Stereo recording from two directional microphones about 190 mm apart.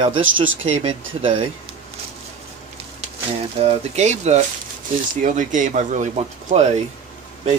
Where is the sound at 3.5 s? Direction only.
35° right (ahead or behind).